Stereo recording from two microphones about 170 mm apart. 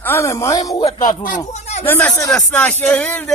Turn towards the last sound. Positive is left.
turn(degrees=5)  # may be behind; listen again after turning